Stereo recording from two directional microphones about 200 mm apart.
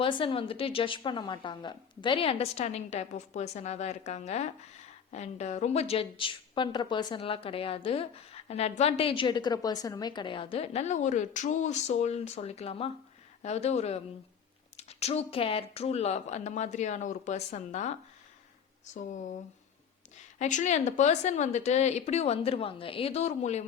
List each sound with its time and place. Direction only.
0.0 s a woman's voice: 25° left (ahead or behind)
20.4 s speech: 35° left (ahead or behind)